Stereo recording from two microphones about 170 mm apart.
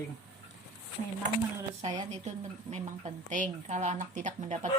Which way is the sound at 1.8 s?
25° right (ahead or behind).